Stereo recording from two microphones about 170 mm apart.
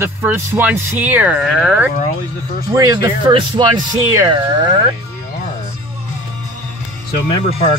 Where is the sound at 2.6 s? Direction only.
20° right (ahead or behind).